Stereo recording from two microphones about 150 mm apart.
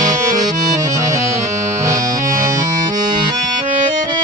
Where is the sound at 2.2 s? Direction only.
60° right (ahead or behind).